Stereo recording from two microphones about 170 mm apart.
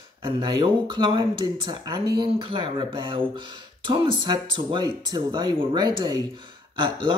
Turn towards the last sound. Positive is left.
turn(degrees=-30)  # may be behind; listen again after turning